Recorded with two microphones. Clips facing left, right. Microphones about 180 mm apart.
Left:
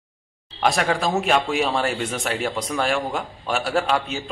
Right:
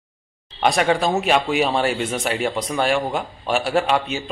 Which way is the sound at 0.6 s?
Centre (ahead or behind).